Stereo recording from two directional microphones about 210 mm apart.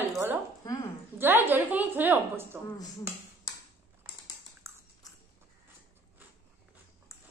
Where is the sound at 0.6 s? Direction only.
20° left (ahead or behind).